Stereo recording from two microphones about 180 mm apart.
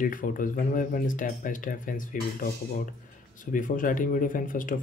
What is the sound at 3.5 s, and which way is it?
Speech, 45° left (ahead or behind).